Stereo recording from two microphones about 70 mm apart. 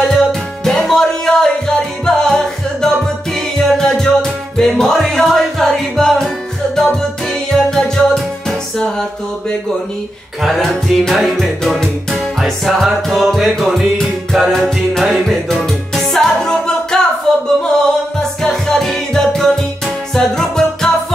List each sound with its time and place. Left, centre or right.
0.1 s music: centre
10.4 s music: centre
17.3 s singing: centre
18.4 s music: centre